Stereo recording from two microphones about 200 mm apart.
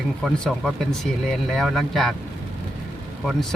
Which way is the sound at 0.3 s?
5° left (ahead or behind).